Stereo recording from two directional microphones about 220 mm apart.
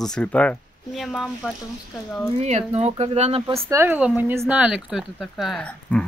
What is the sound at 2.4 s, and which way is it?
Speech, 30° right (ahead or behind).